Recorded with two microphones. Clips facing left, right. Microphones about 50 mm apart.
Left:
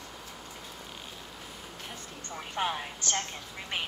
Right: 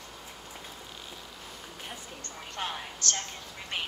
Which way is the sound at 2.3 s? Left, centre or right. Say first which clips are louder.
Left 5 dB; centre.